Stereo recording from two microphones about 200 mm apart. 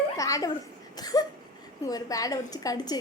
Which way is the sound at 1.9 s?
20° left (ahead or behind).